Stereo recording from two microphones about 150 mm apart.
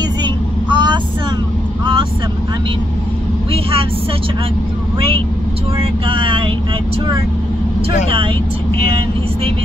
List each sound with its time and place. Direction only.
0.2 s vehicle: 30° right (ahead or behind)
5.8 s speech: 35° right (ahead or behind)
8.8 s speech: 40° right (ahead or behind)